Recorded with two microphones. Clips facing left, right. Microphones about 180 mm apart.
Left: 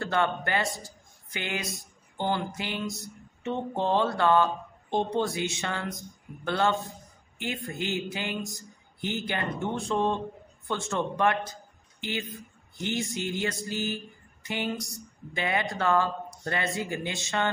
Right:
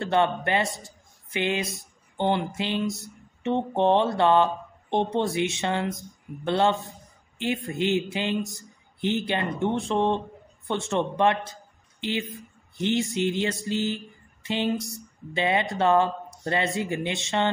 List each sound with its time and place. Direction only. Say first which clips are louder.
0.0 s speech: right 4 dB; 25° right (ahead or behind)
0.7 s a man's voice: left 1 dB; centre (ahead or behind)
1.3 s speech: right 7 dB; 25° right (ahead or behind)
2.8 s a man's voice: right 6 dB; centre (ahead or behind)
3.4 s speech: right 6 dB; 25° right (ahead or behind)
12.7 s a sound: right 6 dB; 20° right (ahead or behind)
13.1 s speech: right 5 dB; 25° right (ahead or behind)